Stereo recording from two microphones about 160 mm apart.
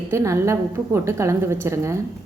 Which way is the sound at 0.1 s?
20° right (ahead or behind).